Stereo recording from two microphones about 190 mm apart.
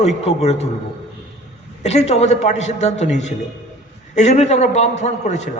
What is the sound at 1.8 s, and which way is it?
A man's voice, 35° left (ahead or behind).